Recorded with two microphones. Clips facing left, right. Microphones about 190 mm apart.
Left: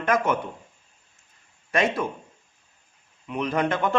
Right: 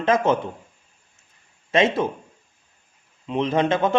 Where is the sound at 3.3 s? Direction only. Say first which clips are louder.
Right 4 dB; 25° right (ahead or behind).